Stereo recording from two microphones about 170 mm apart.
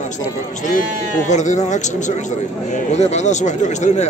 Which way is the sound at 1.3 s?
45° left (ahead or behind).